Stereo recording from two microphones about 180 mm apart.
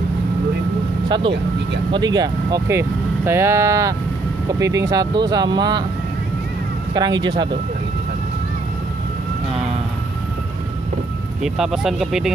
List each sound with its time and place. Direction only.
1.0 s speech: 25° right (ahead or behind)
6.9 s speech: 20° right (ahead or behind)
11.4 s speech: centre (ahead or behind)